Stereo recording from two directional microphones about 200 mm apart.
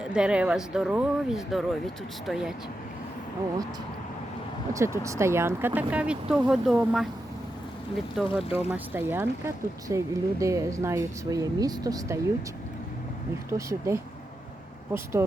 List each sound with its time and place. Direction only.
0.0 s speech: 5° right (ahead or behind)
4.7 s speech: 15° right (ahead or behind)
8.1 s speech: 5° right (ahead or behind)
13.5 s speech: 15° right (ahead or behind)